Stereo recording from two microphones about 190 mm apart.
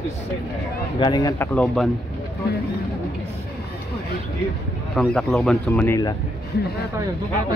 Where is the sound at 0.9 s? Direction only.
25° left (ahead or behind).